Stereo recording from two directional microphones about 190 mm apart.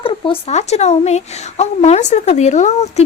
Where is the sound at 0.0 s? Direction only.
30° left (ahead or behind).